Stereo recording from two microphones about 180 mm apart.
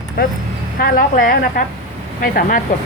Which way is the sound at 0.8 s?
60° left (ahead or behind).